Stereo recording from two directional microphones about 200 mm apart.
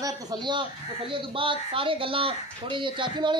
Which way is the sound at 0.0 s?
20° right (ahead or behind).